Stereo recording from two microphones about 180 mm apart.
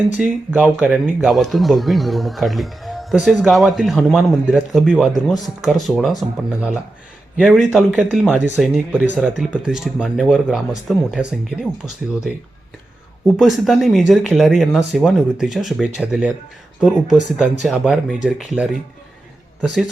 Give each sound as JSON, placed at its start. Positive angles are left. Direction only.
{"t": 0.1, "sound": "speech", "side_deg": -5}
{"t": 13.2, "sound": "speech", "side_deg": 0}